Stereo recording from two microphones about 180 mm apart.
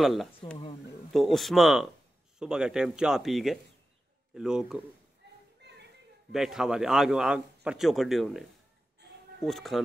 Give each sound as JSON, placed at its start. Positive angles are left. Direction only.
{"t": 0.0, "sound": "a man's voice", "side_deg": 0}
{"t": 5.6, "sound": "children playing", "side_deg": -70}
{"t": 6.3, "sound": "a man's voice", "side_deg": -5}